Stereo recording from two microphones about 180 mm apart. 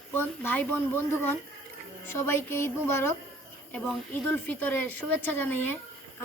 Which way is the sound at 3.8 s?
5° left (ahead or behind).